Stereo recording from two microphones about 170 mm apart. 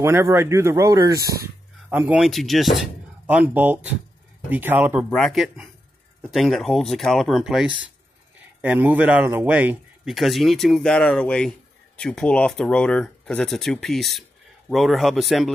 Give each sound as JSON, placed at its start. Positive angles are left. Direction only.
{"t": 0.0, "sound": "speech", "side_deg": -15}
{"t": 1.9, "sound": "speech", "side_deg": -10}
{"t": 5.1, "sound": "speech", "side_deg": 0}